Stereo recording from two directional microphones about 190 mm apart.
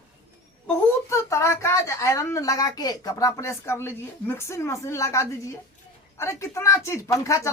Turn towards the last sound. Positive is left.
turn(degrees=15)  # may be behind; listen again after turning